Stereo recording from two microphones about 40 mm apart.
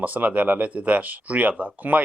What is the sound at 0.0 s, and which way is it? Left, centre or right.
Speech, right.